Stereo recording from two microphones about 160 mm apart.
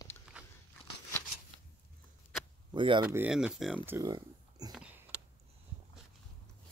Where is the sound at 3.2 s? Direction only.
5° right (ahead or behind).